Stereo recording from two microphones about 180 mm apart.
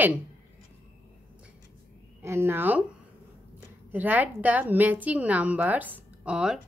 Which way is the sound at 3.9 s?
10° right (ahead or behind).